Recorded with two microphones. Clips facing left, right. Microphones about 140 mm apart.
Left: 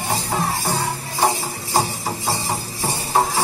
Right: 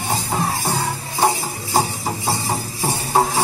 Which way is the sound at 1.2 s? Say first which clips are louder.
Right 1 dB; 15° right (ahead or behind).